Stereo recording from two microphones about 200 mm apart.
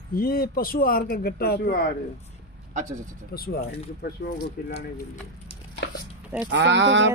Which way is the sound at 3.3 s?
50° left (ahead or behind).